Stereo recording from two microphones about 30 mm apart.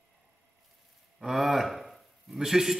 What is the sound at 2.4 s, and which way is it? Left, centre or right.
Speech, centre.